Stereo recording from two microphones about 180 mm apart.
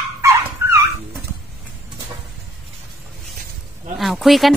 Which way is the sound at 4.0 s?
Centre (ahead or behind).